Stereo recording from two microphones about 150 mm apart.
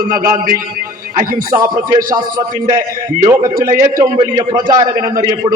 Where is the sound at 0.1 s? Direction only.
20° right (ahead or behind).